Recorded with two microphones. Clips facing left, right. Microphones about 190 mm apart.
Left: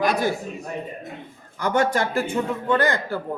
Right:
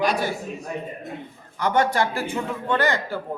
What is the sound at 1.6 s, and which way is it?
A man's voice, 45° left (ahead or behind).